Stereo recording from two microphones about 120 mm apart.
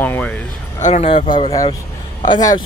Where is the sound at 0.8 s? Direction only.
85° left.